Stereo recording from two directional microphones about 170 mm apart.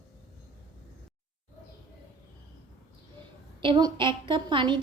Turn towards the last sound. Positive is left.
turn(degrees=-25)  # may be behind; listen again after turning